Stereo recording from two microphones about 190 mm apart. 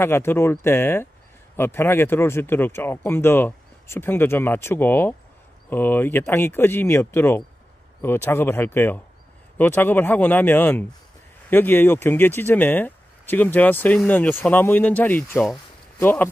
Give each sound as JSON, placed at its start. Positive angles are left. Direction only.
{"t": 0.0, "sound": "speech", "side_deg": 10}